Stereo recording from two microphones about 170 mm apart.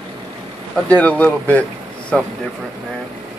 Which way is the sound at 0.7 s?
5° left (ahead or behind).